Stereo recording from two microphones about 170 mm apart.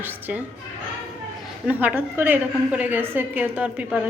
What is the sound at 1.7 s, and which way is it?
A woman's voice, 10° right (ahead or behind).